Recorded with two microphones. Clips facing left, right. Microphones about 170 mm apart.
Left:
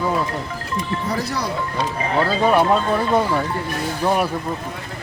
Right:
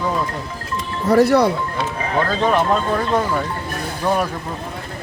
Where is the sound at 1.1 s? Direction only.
60° right (ahead or behind).